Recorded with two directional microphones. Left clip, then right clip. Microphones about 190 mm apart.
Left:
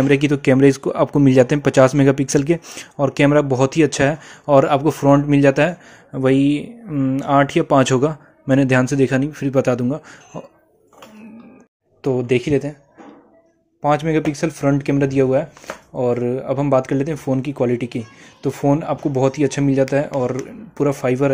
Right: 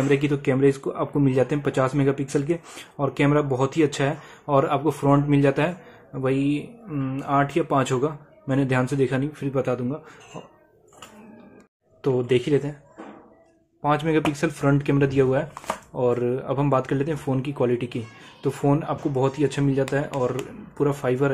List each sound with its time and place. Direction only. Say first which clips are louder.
0.1 s speech: left 6 dB; 35° left (ahead or behind)
12.0 s speech: left 3 dB; 25° left (ahead or behind)
13.8 s speech: left 4 dB; 25° left (ahead or behind)